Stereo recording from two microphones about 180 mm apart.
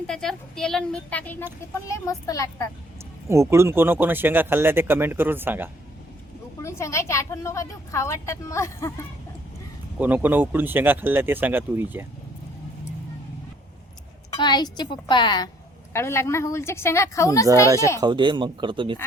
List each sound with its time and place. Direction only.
0.1 s a woman's voice: 5° left (ahead or behind); by 2.6 s 20° left (ahead or behind)
3.2 s speech: 15° right (ahead or behind)
6.6 s a woman's voice: 15° left (ahead or behind)
10.0 s speech: 10° right (ahead or behind)
14.3 s a woman's voice: 25° left (ahead or behind)
15.9 s a woman's voice: 15° left (ahead or behind)
18.0 s speech: 25° right (ahead or behind)